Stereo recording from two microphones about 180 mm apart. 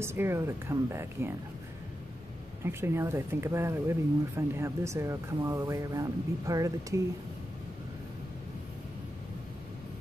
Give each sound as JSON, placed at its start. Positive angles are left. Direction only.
{"t": 0.0, "sound": "speech", "side_deg": -15}
{"t": 2.6, "sound": "speech", "side_deg": -15}